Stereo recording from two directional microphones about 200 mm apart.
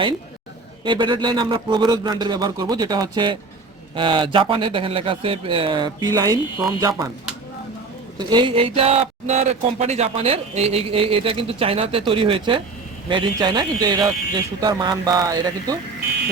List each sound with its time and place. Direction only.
0.9 s speech: 25° right (ahead or behind)
8.2 s speech: 20° right (ahead or behind)